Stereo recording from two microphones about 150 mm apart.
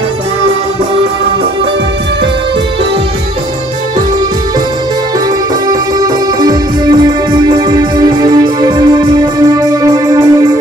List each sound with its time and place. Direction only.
5.7 s music: 25° right (ahead or behind)